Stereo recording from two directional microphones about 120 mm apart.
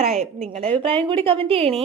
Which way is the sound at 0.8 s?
45° right (ahead or behind).